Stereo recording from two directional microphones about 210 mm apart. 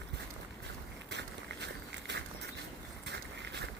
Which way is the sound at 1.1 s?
55° right (ahead or behind).